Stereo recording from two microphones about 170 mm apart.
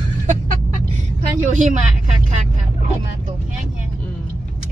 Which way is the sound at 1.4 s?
45° right (ahead or behind).